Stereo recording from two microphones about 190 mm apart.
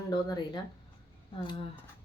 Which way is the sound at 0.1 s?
20° left (ahead or behind).